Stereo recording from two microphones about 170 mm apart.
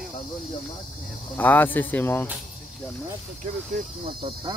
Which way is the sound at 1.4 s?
10° left (ahead or behind).